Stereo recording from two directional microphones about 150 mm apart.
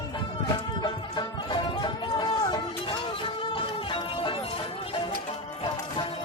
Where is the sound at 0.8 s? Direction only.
30° left (ahead or behind).